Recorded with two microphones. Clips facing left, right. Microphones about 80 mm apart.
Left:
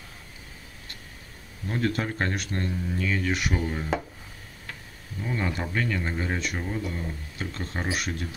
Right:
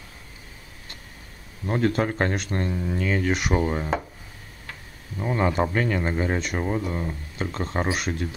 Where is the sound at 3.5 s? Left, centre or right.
Right.